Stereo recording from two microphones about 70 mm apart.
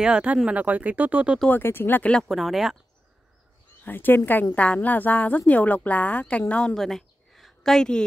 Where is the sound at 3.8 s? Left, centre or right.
Left.